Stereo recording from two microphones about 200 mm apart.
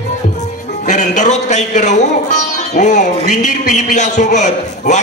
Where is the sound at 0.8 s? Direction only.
40° left (ahead or behind).